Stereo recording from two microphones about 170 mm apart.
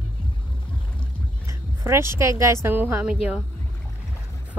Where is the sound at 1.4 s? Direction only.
15° right (ahead or behind).